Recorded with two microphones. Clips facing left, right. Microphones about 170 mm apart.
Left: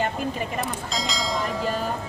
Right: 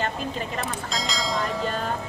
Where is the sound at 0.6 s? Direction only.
Centre (ahead or behind).